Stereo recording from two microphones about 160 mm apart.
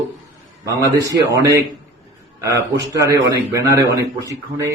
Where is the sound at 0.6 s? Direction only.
20° right (ahead or behind).